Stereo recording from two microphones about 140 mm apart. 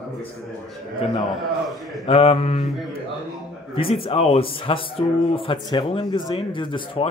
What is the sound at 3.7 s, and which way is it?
Speech, 40° left (ahead or behind).